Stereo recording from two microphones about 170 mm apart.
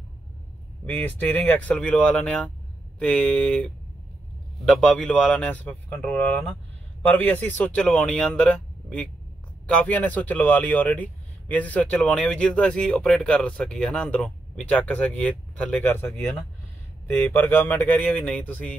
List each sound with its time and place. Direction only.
0.8 s a man's voice: 10° left (ahead or behind)
4.6 s a man's voice: 5° left (ahead or behind)